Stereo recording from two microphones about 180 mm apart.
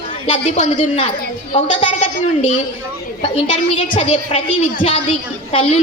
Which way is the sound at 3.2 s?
30° left (ahead or behind).